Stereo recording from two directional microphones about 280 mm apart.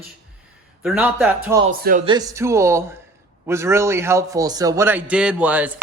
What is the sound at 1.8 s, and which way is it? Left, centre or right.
Speech, right.